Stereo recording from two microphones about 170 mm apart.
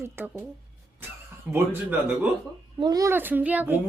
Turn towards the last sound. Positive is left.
turn(degrees=-10)  # may be behind; listen again after turning